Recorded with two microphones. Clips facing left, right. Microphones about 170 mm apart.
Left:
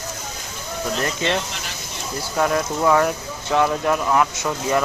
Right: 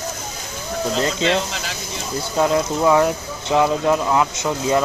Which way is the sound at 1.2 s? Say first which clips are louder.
Right 3 dB; 90° right.